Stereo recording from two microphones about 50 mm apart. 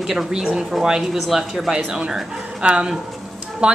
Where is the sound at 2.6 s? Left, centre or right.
Centre.